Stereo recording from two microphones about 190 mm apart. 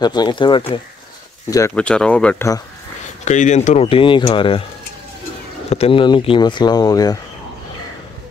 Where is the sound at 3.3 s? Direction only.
40° left (ahead or behind).